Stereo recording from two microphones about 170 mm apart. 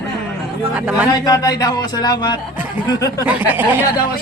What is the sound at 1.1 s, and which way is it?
A man's voice, 20° left (ahead or behind).